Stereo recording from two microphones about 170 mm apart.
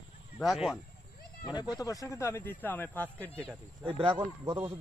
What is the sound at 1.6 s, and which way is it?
Speech, 20° left (ahead or behind).